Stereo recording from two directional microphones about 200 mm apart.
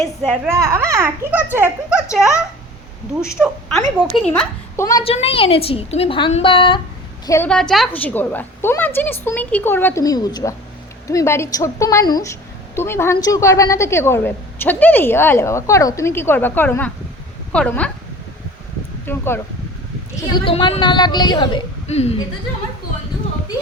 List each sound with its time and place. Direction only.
0.0 s a woman's voice: centre (ahead or behind)
0.4 s a child's voice: 15° right (ahead or behind)
3.4 s a woman's voice: centre (ahead or behind)
5.0 s a woman's voice: 30° left (ahead or behind)
7.3 s a woman's voice: 10° left (ahead or behind)
19.0 s a woman's voice: 10° left (ahead or behind)
20.1 s a woman's voice: 25° left (ahead or behind)